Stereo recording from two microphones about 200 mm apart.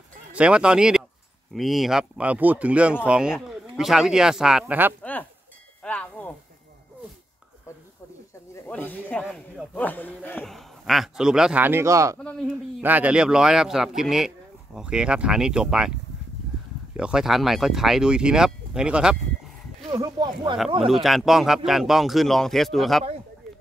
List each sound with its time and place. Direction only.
0.3 s speech: 5° right (ahead or behind)
5.8 s cowbell: 5° left (ahead or behind)
8.6 s speech: 10° left (ahead or behind)
9.2 s speech: centre (ahead or behind)
12.2 s speech: 5° left (ahead or behind)
12.8 s speech: 10° right (ahead or behind)
16.9 s speech: 5° right (ahead or behind)
19.9 s speech: 20° right (ahead or behind)
20.8 s speech: centre (ahead or behind)